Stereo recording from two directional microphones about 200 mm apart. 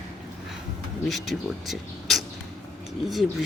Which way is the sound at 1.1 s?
Centre (ahead or behind).